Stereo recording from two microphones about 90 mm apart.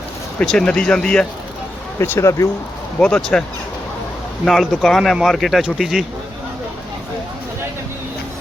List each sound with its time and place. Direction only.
0.3 s speech: 10° left (ahead or behind)
2.0 s speech: 30° left (ahead or behind)
3.0 s speech: 10° left (ahead or behind)
4.4 s speech: centre (ahead or behind)